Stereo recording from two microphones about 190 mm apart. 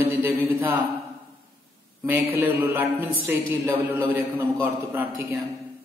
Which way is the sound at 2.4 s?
15° right (ahead or behind).